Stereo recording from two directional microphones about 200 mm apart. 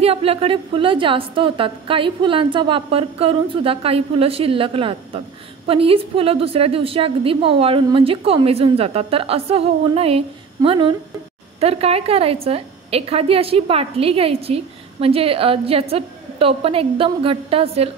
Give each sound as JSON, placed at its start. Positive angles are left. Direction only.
{"t": 0.0, "sound": "a woman's voice", "side_deg": -30}